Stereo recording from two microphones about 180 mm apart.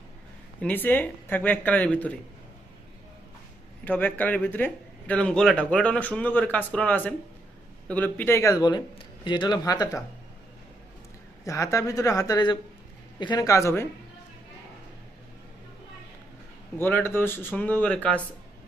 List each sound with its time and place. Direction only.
0.6 s speech: 10° left (ahead or behind)
3.8 s speech: 10° left (ahead or behind)
11.4 s speech: 15° left (ahead or behind)
16.7 s speech: 10° left (ahead or behind)